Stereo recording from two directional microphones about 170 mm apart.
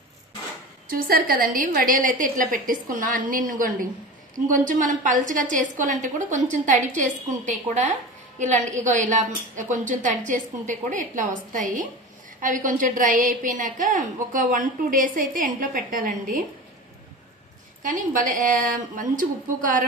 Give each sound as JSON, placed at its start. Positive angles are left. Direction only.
{"t": 0.8, "sound": "a woman's voice", "side_deg": -55}
{"t": 8.4, "sound": "a woman's voice", "side_deg": -45}
{"t": 17.8, "sound": "a woman's voice", "side_deg": -50}